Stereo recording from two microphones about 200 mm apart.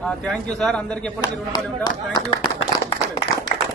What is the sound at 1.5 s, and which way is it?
Speech, 20° left (ahead or behind).